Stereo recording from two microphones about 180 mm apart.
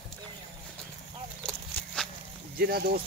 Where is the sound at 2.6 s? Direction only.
60° right (ahead or behind).